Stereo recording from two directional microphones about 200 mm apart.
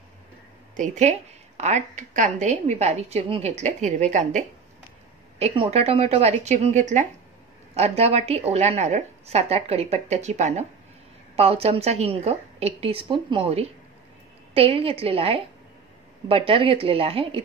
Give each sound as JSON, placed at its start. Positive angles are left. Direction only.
{"t": 0.7, "sound": "a woman's voice", "side_deg": -35}